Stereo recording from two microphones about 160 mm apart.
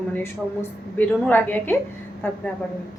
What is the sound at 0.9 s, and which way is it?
Speech, 10° left (ahead or behind).